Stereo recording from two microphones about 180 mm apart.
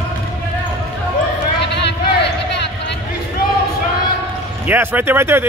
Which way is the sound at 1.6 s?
70° left (ahead or behind).